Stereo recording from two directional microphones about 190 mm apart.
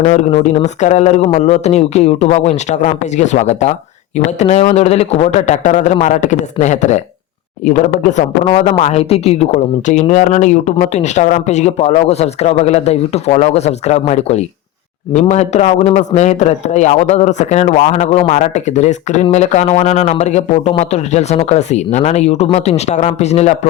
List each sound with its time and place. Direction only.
0.0 s a man's voice: 35° left (ahead or behind)